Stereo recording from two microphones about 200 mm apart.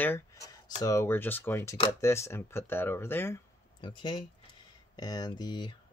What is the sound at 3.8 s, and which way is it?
Speech, 20° left (ahead or behind).